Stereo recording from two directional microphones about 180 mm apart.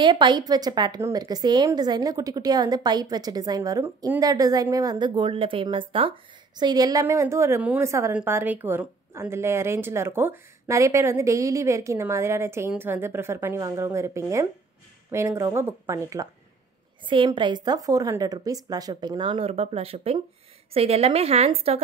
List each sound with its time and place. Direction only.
0.0 s a woman's voice: 25° right (ahead or behind)